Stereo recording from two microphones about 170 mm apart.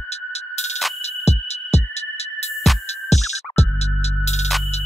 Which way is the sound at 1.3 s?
40° left (ahead or behind).